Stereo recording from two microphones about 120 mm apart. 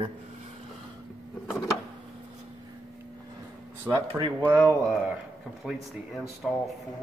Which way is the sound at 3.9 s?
20° right (ahead or behind).